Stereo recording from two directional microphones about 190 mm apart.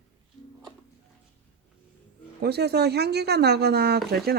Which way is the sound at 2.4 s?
60° right (ahead or behind).